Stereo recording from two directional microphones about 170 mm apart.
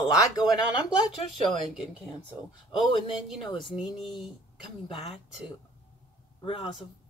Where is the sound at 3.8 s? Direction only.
Centre (ahead or behind).